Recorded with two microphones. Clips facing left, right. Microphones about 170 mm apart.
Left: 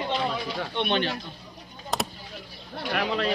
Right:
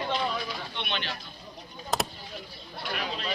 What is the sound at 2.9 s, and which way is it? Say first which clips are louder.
Speech: left 8 dB; 70° left (ahead or behind).